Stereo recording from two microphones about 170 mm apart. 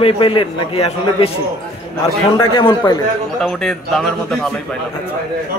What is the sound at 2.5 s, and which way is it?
Speech, 25° left (ahead or behind).